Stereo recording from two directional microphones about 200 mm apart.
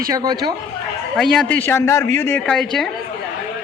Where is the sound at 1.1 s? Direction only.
Centre (ahead or behind).